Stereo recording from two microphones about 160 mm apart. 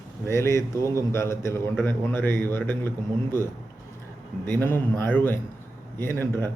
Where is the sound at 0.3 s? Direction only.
15° left (ahead or behind).